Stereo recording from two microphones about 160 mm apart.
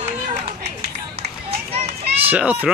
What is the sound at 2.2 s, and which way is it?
Speech, 10° right (ahead or behind).